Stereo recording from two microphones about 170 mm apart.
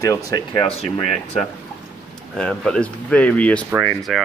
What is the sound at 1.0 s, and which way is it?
Speech, 40° left (ahead or behind).